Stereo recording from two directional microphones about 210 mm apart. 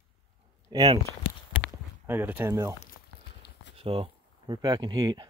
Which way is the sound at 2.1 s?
10° right (ahead or behind).